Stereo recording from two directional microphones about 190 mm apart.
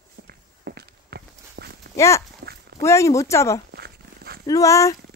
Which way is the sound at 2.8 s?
15° left (ahead or behind).